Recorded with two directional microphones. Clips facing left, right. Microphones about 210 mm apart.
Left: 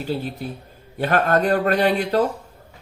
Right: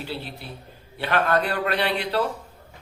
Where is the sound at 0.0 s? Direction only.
45° left (ahead or behind).